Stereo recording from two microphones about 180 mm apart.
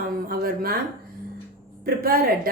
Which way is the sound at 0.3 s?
55° right (ahead or behind).